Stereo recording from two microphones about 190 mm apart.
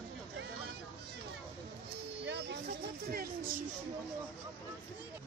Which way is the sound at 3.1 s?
50° right (ahead or behind).